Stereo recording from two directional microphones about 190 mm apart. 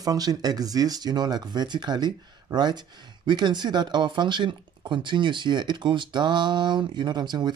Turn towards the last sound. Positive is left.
turn(degrees=-20)  # may be behind; listen again after turning